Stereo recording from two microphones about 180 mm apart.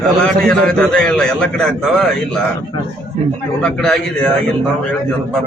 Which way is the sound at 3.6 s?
5° left (ahead or behind).